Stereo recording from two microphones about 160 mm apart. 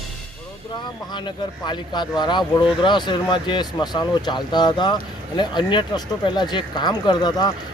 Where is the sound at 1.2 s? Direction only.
30° left (ahead or behind).